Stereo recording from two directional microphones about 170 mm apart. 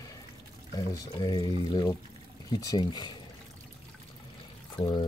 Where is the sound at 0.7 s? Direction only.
25° left (ahead or behind).